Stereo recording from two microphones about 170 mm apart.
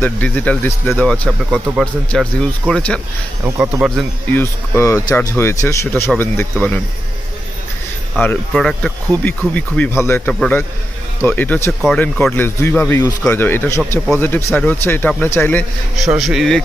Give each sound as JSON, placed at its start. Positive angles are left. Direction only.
{"t": 0.0, "sound": "speech", "side_deg": 10}
{"t": 3.4, "sound": "speech", "side_deg": -15}
{"t": 4.3, "sound": "speech", "side_deg": 15}
{"t": 8.2, "sound": "speech", "side_deg": 5}
{"t": 16.0, "sound": "speech", "side_deg": 0}